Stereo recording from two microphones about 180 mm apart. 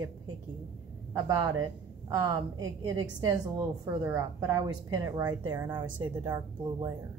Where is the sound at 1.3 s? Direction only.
15° right (ahead or behind).